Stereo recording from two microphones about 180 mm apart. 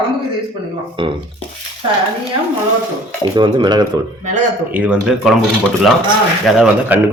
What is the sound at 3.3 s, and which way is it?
Speech, 25° right (ahead or behind).